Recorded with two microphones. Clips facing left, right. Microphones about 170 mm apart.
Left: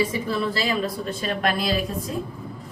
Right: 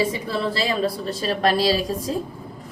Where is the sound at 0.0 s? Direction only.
30° right (ahead or behind).